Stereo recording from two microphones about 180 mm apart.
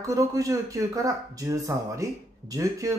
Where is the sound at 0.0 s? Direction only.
20° right (ahead or behind).